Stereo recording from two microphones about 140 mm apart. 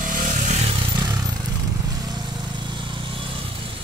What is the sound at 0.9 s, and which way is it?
Vehicle, 30° right (ahead or behind).